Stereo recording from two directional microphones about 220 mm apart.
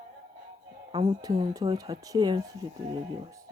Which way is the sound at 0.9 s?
25° right (ahead or behind).